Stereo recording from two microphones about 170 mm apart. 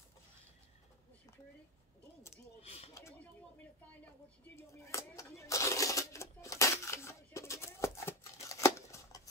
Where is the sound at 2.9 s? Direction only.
15° left (ahead or behind).